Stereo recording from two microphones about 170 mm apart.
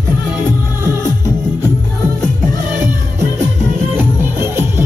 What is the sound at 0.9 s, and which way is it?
Music, 15° right (ahead or behind).